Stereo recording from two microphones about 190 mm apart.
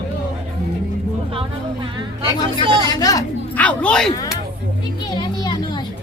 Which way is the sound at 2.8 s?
20° left (ahead or behind).